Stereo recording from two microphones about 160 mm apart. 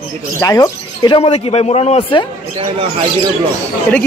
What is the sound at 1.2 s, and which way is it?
A man's voice, 40° left (ahead or behind).